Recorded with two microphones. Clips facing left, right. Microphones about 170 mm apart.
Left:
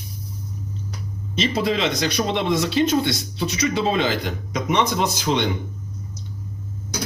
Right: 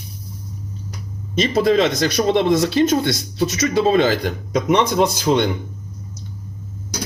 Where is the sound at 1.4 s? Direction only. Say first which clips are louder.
Right 6 dB; 45° right (ahead or behind).